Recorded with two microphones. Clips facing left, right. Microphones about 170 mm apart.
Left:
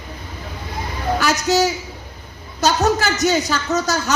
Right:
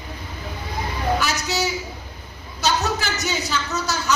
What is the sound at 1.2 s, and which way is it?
A woman's voice, 45° left (ahead or behind).